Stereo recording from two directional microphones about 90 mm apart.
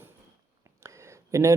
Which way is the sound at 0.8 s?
35° right (ahead or behind).